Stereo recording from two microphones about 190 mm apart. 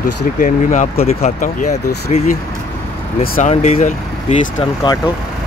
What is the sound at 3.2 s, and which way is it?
Speech, 50° left (ahead or behind).